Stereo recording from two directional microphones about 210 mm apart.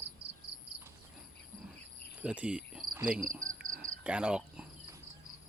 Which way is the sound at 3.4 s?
40° right (ahead or behind).